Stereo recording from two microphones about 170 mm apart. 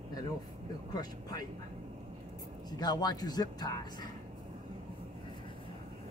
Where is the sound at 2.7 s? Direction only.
25° left (ahead or behind).